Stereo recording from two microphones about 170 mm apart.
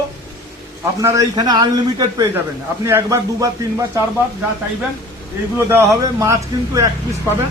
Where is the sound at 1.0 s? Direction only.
20° right (ahead or behind).